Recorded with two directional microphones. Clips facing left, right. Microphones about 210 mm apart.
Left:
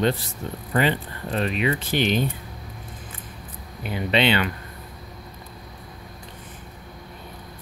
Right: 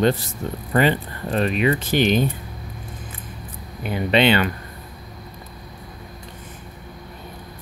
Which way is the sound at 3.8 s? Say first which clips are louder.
Right 4 dB; 50° right (ahead or behind).